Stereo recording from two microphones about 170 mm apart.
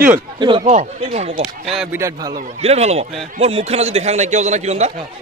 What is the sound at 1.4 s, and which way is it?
Speech, 5° right (ahead or behind).